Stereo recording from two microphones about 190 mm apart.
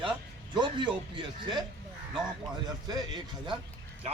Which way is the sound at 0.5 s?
25° right (ahead or behind).